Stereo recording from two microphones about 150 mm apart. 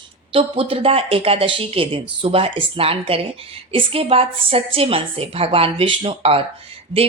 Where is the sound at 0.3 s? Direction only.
40° right (ahead or behind).